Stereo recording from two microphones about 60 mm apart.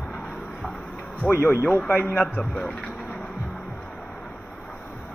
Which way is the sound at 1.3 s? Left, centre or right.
Left.